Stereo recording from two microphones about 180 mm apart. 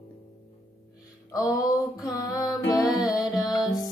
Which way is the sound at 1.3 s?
20° left (ahead or behind).